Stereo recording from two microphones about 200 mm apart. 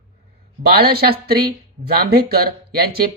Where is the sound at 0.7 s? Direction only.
50° right (ahead or behind).